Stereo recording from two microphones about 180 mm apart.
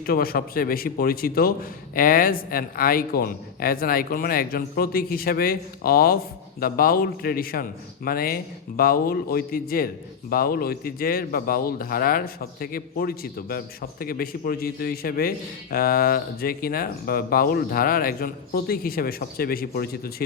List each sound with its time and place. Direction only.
0.0 s a man's voice: 55° left (ahead or behind)